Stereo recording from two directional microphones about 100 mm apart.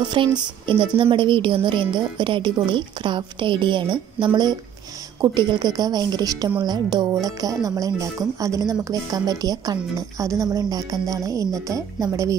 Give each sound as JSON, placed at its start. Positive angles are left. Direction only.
{"t": 0.0, "sound": "a woman's voice", "side_deg": -50}